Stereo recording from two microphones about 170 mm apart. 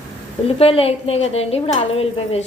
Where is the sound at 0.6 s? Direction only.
35° left (ahead or behind).